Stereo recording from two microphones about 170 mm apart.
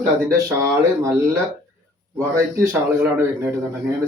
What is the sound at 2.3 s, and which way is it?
Speech, 15° right (ahead or behind).